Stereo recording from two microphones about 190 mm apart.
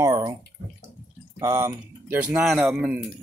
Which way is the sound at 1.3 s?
15° right (ahead or behind).